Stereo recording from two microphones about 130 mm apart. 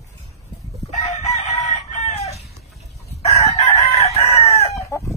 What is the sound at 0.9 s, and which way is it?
Chicken, 60° left (ahead or behind).